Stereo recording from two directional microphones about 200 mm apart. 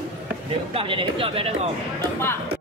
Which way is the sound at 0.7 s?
25° right (ahead or behind).